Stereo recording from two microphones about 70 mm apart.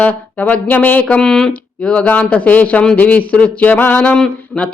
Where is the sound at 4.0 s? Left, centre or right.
Centre.